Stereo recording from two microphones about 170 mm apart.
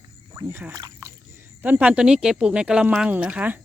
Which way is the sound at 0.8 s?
20° right (ahead or behind).